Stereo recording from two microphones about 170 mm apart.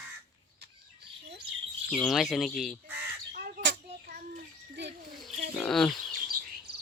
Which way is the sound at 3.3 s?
60° right (ahead or behind).